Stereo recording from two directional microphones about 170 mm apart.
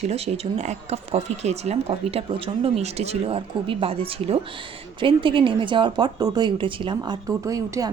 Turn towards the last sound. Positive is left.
turn(degrees=-20)  # may be behind; listen again after turning